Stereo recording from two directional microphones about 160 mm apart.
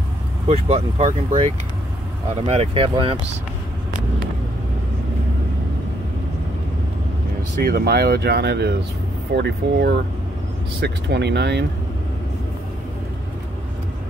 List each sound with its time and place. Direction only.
0.5 s speech: 40° right (ahead or behind)
7.6 s speech: 85° right